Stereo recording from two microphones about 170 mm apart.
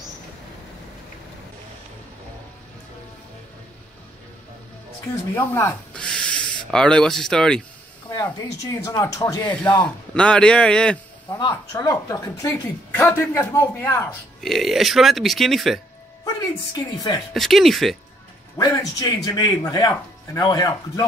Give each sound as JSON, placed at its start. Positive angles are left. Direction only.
{"t": 5.3, "sound": "speech", "side_deg": 15}
{"t": 8.8, "sound": "a man's voice", "side_deg": 20}
{"t": 9.5, "sound": "a man's voice", "side_deg": 5}
{"t": 11.2, "sound": "speech", "side_deg": 25}
{"t": 14.4, "sound": "a man's voice", "side_deg": 0}
{"t": 16.3, "sound": "a man's voice", "side_deg": 20}
{"t": 17.3, "sound": "a man's voice", "side_deg": 0}
{"t": 18.6, "sound": "a man's voice", "side_deg": 20}